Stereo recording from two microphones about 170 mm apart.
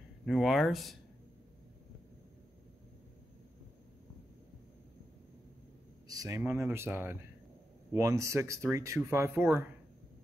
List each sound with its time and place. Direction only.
0.2 s speech: centre (ahead or behind)
6.0 s speech: 20° right (ahead or behind)